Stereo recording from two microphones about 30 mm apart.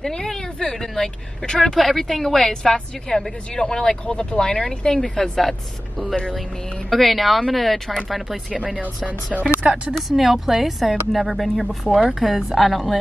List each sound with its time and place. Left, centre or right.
1.6 s speech: centre
4.1 s speech: left
5.2 s speech: centre
9.0 s speech: right
9.9 s speech: centre